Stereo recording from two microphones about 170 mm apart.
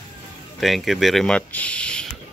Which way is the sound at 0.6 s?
Centre (ahead or behind).